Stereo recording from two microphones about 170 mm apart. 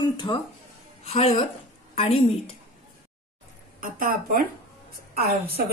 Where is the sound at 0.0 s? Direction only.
25° left (ahead or behind).